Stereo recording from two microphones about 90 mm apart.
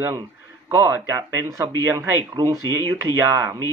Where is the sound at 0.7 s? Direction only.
30° right (ahead or behind).